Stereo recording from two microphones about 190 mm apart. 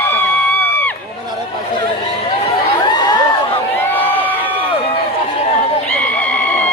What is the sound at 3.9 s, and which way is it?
Crowd, 10° left (ahead or behind).